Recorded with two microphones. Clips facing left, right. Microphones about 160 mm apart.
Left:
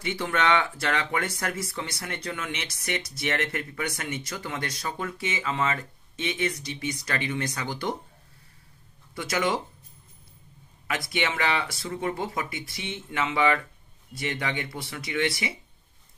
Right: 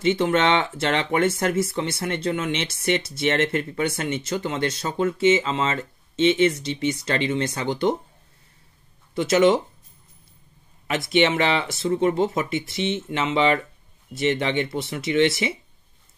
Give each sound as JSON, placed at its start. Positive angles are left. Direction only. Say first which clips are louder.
{"t": 0.0, "sound": "speech", "louder": "right 7 dB", "side_deg": -25}
{"t": 9.1, "sound": "speech", "louder": "right 10 dB", "side_deg": -25}
{"t": 10.9, "sound": "speech", "louder": "right 9 dB", "side_deg": -25}